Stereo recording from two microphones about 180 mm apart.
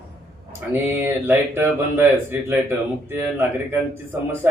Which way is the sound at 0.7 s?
10° right (ahead or behind).